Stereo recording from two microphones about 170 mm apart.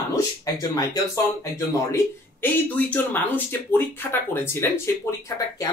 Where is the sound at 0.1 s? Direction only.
20° left (ahead or behind).